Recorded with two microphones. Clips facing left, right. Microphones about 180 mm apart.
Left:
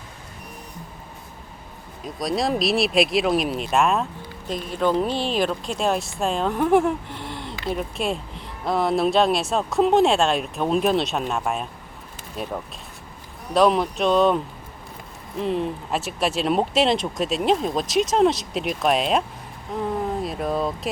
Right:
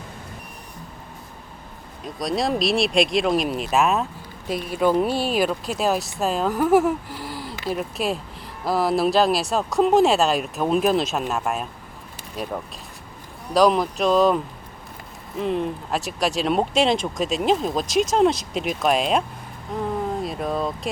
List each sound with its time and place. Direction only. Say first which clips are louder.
2.0 s speech: even; centre (ahead or behind)
13.5 s speech: right 1 dB; centre (ahead or behind)